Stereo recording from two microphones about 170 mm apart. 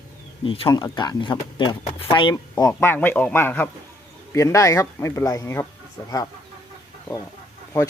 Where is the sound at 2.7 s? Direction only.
10° left (ahead or behind).